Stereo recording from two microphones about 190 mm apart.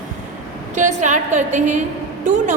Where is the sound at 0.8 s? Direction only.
40° right (ahead or behind).